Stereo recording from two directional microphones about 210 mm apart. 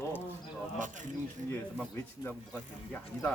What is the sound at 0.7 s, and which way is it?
Speech, 35° right (ahead or behind).